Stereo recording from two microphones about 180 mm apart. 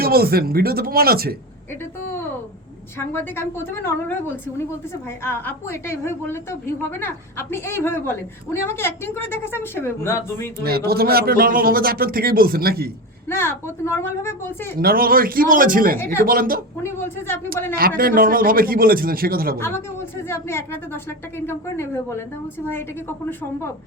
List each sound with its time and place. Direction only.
0.0 s a man's voice: 60° right (ahead or behind)
3.0 s a woman's voice: 15° left (ahead or behind)
10.6 s a man's voice: 60° right (ahead or behind)
13.2 s a woman's voice: 15° left (ahead or behind)
14.8 s speech: 55° right (ahead or behind)
16.8 s a woman's voice: 15° left (ahead or behind)
17.7 s speech: 55° right (ahead or behind)
19.5 s a woman's voice: 15° left (ahead or behind)